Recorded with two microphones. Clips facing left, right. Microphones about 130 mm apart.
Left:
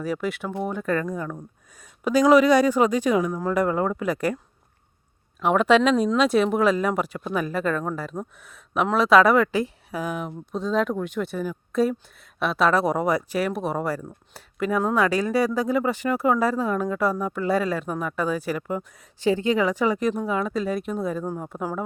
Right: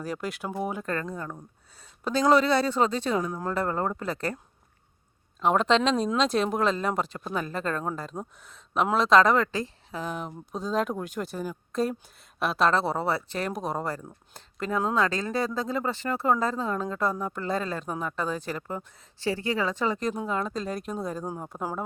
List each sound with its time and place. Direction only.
0.0 s speech: centre (ahead or behind)
1.7 s speech: 10° left (ahead or behind)
5.4 s speech: 5° left (ahead or behind)
8.1 s speech: 25° right (ahead or behind)
8.5 s speech: 5° left (ahead or behind)
12.8 s speech: 15° left (ahead or behind); by 21.8 s 5° right (ahead or behind)